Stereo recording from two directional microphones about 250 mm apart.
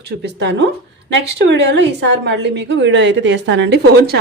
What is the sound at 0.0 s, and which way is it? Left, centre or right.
A woman's voice, right.